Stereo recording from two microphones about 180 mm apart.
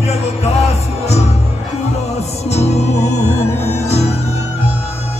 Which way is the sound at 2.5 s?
35° left (ahead or behind).